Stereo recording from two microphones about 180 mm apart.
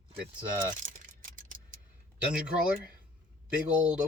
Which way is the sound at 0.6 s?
45° right (ahead or behind).